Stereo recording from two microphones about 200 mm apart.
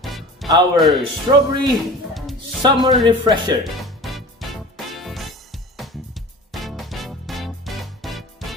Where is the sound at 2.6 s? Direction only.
20° right (ahead or behind).